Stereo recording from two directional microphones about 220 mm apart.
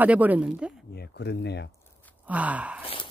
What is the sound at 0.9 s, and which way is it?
Speech, 50° left (ahead or behind).